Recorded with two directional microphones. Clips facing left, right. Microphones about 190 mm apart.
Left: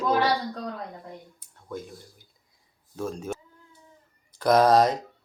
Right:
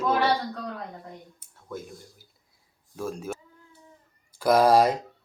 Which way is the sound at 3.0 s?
10° right (ahead or behind).